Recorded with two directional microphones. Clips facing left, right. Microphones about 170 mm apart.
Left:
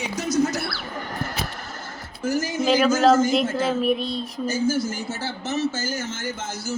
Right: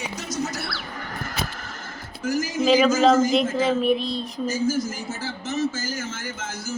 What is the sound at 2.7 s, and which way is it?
A woman's voice, centre (ahead or behind).